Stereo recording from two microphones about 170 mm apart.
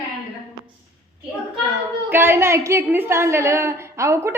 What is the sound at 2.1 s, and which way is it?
A woman's voice, 10° right (ahead or behind).